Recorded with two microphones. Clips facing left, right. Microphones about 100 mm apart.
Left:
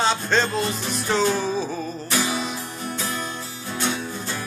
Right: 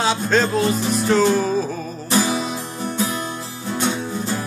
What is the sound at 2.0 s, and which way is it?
Music, 30° right (ahead or behind).